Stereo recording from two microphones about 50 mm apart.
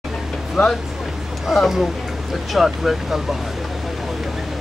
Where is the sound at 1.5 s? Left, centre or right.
Centre.